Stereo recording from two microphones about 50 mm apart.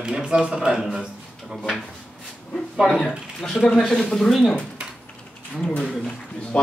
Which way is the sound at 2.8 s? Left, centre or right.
Centre.